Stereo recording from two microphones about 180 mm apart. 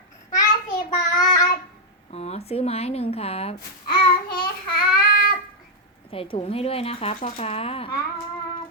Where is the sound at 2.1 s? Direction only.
35° left (ahead or behind).